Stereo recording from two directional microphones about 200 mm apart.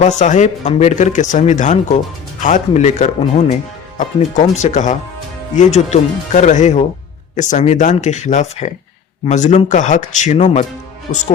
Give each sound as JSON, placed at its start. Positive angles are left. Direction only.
{"t": 0.0, "sound": "speech", "side_deg": 35}